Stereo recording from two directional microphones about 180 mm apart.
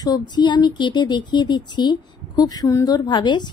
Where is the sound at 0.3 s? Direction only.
25° left (ahead or behind).